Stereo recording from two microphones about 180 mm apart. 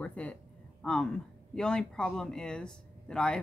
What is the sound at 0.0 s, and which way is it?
Speech, 10° left (ahead or behind).